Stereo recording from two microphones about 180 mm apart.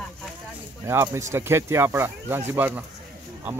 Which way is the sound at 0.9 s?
15° right (ahead or behind).